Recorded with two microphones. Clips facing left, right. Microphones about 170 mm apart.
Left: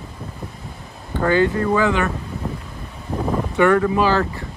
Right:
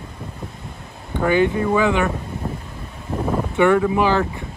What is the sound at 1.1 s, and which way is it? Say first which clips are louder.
Speech: even; 15° right (ahead or behind).